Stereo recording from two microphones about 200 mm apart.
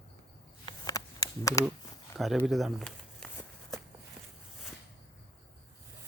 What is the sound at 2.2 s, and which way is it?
Speech, centre (ahead or behind).